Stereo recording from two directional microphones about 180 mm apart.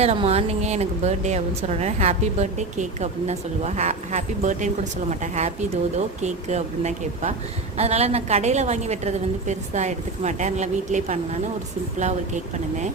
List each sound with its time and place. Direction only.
0.0 s a woman's voice: 35° right (ahead or behind)